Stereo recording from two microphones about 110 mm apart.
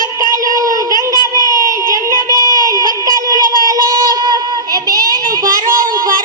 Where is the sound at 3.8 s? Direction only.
35° right (ahead or behind).